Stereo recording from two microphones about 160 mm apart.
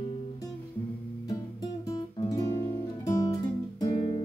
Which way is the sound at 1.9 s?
20° left (ahead or behind).